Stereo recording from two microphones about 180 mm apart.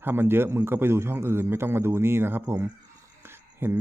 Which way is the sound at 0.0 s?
10° right (ahead or behind).